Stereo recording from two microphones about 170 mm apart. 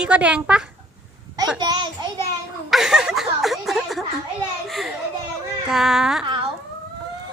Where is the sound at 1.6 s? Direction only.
25° right (ahead or behind).